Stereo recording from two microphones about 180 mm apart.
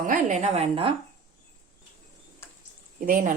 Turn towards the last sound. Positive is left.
turn(degrees=-50)  # may be behind; listen again after turning